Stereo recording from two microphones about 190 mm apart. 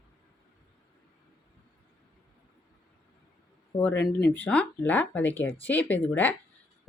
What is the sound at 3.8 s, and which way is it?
Speech, 10° left (ahead or behind).